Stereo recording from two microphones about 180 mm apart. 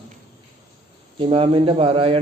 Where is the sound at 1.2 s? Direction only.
30° right (ahead or behind).